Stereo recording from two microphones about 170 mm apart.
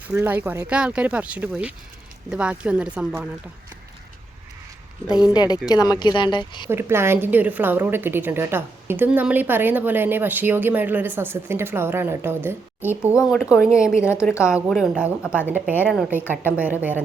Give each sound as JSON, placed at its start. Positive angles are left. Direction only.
{"t": 0.1, "sound": "a woman's voice", "side_deg": -10}
{"t": 5.3, "sound": "speech", "side_deg": 25}
{"t": 6.7, "sound": "a woman's voice", "side_deg": -15}